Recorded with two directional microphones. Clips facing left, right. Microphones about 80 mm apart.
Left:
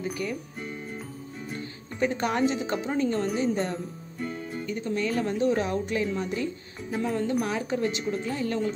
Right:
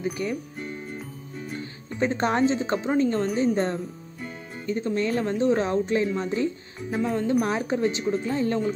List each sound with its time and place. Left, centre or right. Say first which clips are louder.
0.0 s speech: right 3 dB; right
2.0 s speech: right 3 dB; right
6.9 s speech: right 3 dB; centre
7.4 s speech: right 3 dB; right